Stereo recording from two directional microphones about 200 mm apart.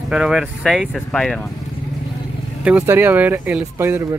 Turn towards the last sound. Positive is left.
turn(degrees=-10)  # may be behind; listen again after turning